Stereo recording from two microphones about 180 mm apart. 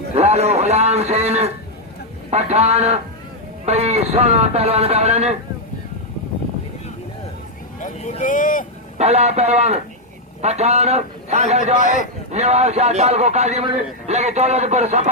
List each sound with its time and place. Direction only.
0.1 s a man's voice: 35° right (ahead or behind)
7.8 s speech: 45° left (ahead or behind)
9.0 s a man's voice: 35° right (ahead or behind)